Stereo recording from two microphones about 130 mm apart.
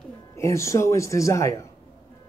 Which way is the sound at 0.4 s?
25° left (ahead or behind).